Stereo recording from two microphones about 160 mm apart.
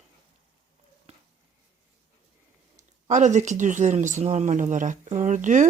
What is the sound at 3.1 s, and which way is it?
Speech, 50° right (ahead or behind).